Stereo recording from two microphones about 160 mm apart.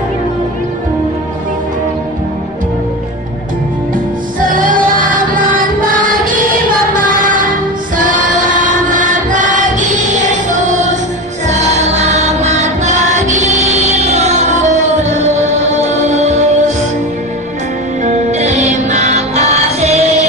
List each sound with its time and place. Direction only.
4.5 s music: 55° right (ahead or behind)
8.0 s choir: 55° right (ahead or behind)
11.4 s music: 45° right (ahead or behind)
18.0 s music: 45° right (ahead or behind)